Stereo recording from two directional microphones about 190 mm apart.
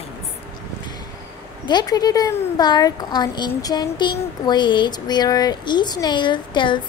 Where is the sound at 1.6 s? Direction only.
20° left (ahead or behind).